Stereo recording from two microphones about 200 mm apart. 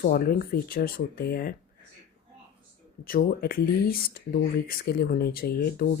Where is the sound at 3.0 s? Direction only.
45° left (ahead or behind).